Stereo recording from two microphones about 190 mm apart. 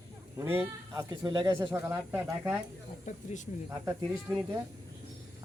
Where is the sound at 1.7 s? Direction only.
10° right (ahead or behind).